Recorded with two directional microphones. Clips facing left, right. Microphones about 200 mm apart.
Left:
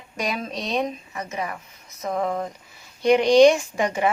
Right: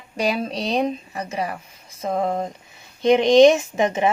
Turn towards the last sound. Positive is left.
turn(degrees=-20)  # may be behind; listen again after turning